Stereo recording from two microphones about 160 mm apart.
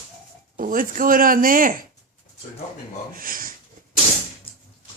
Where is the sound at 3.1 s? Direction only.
60° right (ahead or behind).